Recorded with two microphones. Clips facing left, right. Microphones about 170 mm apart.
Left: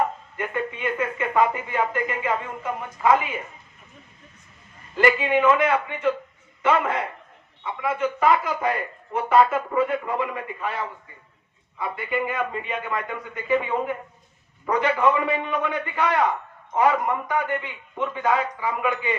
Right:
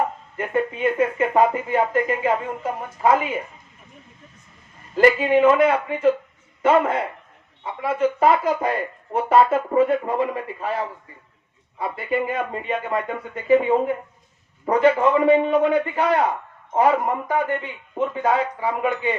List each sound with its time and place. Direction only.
0.3 s speech: 35° right (ahead or behind)
4.9 s a man's voice: 40° right (ahead or behind)